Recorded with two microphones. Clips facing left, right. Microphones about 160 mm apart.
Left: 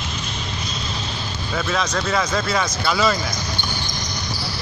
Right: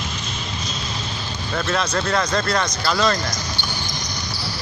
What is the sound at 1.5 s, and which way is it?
Speech, centre (ahead or behind).